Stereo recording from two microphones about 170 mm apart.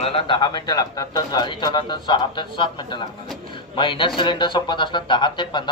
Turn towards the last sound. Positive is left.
turn(degrees=25)  # may be behind; listen again after turning